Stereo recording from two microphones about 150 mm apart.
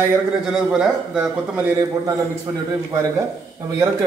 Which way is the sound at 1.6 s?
25° right (ahead or behind).